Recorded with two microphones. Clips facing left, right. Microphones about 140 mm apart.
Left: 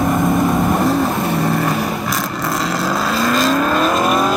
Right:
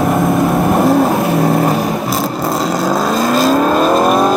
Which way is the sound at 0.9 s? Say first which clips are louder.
Right 5 dB; 50° right (ahead or behind).